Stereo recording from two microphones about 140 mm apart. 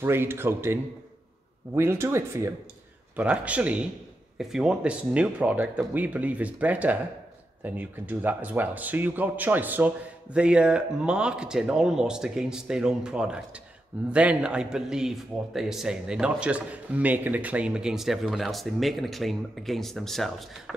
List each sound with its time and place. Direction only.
0.0 s speech: 15° right (ahead or behind)
1.8 s a man's voice: 20° right (ahead or behind); by 20.7 s centre (ahead or behind)